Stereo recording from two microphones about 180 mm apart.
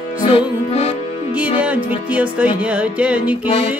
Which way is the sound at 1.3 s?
5° right (ahead or behind).